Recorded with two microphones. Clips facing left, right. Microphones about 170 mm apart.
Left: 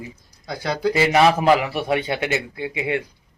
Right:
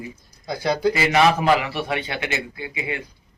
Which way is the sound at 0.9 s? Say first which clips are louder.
Left 5 dB; 35° left (ahead or behind).